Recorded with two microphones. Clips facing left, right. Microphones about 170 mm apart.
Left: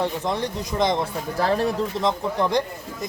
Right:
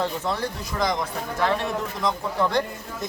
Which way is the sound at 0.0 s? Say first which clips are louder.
Left 2 dB; 15° left (ahead or behind).